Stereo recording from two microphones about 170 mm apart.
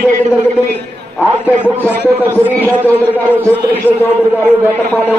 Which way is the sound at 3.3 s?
15° right (ahead or behind).